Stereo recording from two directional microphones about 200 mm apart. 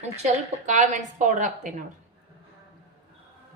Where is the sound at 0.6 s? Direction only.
40° right (ahead or behind).